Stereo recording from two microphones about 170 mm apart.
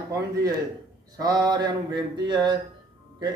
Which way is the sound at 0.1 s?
20° right (ahead or behind).